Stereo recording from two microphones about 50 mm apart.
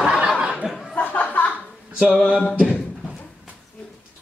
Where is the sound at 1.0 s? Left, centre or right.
Left.